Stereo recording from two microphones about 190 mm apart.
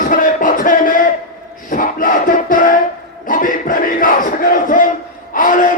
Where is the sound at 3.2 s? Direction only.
45° left (ahead or behind).